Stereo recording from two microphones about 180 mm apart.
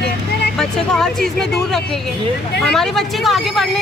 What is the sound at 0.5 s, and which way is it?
Speech, 5° left (ahead or behind).